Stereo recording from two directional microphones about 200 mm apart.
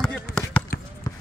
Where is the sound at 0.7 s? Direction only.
50° left (ahead or behind).